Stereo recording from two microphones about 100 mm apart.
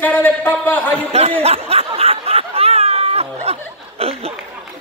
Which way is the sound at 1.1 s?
85° right.